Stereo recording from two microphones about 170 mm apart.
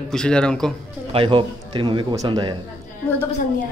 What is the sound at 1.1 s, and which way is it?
Speech, 30° right (ahead or behind).